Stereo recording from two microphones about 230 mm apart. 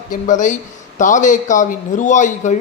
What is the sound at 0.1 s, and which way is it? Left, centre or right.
Speech, left.